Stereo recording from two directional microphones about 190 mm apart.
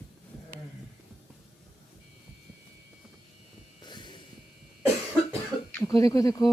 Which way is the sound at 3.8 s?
25° left (ahead or behind).